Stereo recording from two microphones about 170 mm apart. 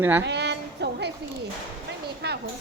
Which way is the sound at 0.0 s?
15° right (ahead or behind).